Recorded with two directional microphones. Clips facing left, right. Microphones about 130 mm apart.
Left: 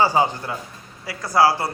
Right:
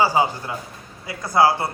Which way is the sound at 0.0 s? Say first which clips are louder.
Even; 15° right (ahead or behind).